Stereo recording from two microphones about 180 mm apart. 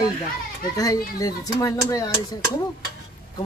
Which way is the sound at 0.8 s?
20° left (ahead or behind).